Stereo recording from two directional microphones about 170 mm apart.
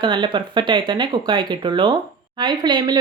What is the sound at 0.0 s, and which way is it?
Speech, 25° right (ahead or behind).